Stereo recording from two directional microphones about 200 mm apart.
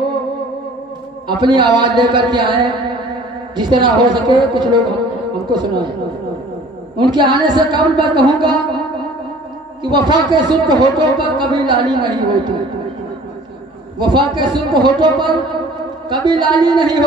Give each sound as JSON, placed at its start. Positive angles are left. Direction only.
{"t": 1.2, "sound": "a man's voice", "side_deg": -20}
{"t": 7.0, "sound": "a man's voice", "side_deg": -20}
{"t": 9.8, "sound": "a man's voice", "side_deg": -20}
{"t": 13.9, "sound": "a man's voice", "side_deg": -20}